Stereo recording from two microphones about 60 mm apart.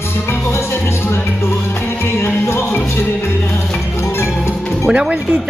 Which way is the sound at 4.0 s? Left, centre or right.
Left.